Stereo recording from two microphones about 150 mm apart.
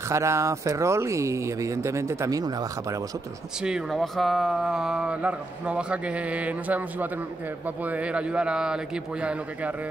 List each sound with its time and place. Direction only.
0.1 s speech: 20° right (ahead or behind)
3.6 s speech: centre (ahead or behind)